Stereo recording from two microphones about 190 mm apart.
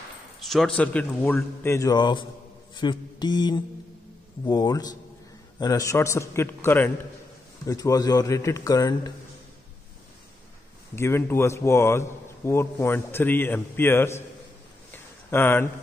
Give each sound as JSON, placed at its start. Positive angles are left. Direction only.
{"t": 0.5, "sound": "a man's voice", "side_deg": 5}
{"t": 11.0, "sound": "a man's voice", "side_deg": 15}
{"t": 14.9, "sound": "a sound", "side_deg": 10}